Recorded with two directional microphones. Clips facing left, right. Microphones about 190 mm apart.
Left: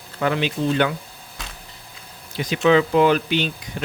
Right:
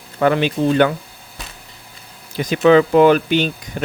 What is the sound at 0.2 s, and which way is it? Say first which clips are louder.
Speech: right 6 dB; 55° right (ahead or behind).